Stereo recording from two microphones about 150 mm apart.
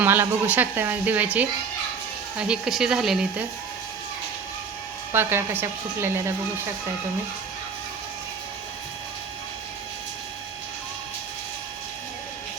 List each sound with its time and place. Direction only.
0.0 s speech: 15° right (ahead or behind)
5.1 s speech: 15° right (ahead or behind)